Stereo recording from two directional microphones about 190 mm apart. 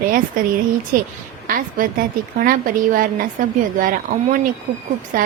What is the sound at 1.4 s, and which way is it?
A woman's voice, 45° right (ahead or behind).